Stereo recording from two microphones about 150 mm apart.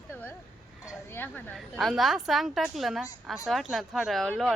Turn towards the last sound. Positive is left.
turn(degrees=0)  # may be behind; listen again after turning